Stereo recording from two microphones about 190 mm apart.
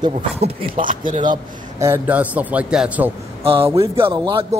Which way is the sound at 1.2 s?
20° right (ahead or behind).